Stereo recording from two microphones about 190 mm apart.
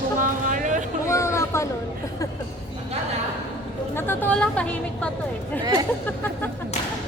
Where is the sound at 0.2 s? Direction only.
45° right (ahead or behind).